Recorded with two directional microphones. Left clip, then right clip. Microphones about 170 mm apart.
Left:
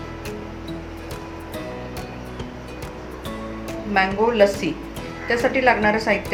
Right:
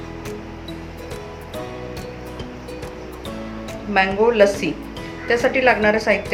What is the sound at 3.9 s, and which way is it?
A woman's voice, 15° right (ahead or behind).